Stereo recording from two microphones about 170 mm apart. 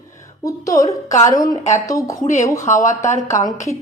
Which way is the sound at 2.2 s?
45° left (ahead or behind).